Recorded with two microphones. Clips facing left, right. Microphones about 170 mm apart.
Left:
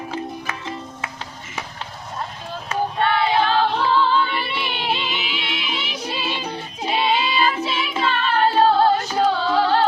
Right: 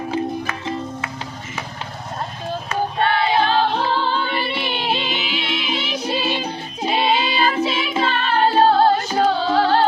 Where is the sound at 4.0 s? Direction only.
35° right (ahead or behind).